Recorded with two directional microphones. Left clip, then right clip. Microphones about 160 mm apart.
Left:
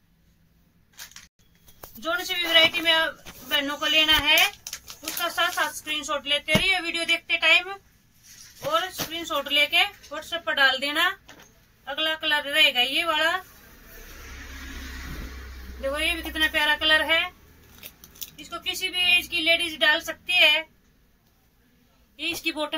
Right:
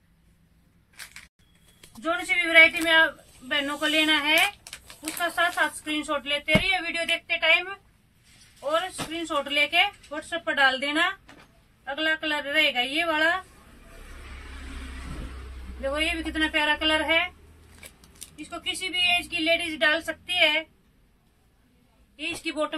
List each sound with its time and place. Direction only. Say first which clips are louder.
2.0 s speech: right 1 dB; 5° left (ahead or behind)
9.1 s speech: left 2 dB; centre (ahead or behind)
15.8 s speech: left 1 dB; centre (ahead or behind)
17.7 s a sound: left 4 dB; 15° left (ahead or behind)
18.5 s speech: left 1 dB; centre (ahead or behind)
22.1 s speech: left 3 dB; centre (ahead or behind)